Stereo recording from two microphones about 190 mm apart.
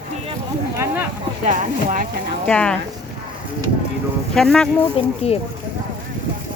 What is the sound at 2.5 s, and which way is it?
Speech, 5° left (ahead or behind).